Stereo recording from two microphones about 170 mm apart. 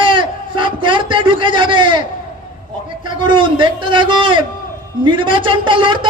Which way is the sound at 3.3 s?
30° right (ahead or behind).